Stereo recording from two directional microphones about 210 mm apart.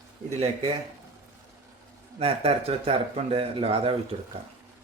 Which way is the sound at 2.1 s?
25° right (ahead or behind).